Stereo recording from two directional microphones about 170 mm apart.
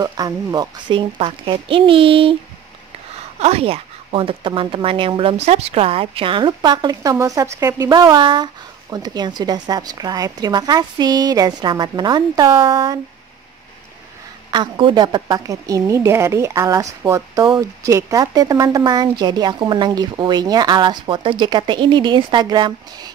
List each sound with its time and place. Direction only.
0.0 s a woman's voice: 20° right (ahead or behind)
3.3 s a woman's voice: 40° right (ahead or behind)
14.5 s a woman's voice: 30° right (ahead or behind)